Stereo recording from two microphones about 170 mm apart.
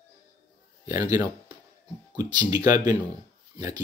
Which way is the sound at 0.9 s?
20° right (ahead or behind).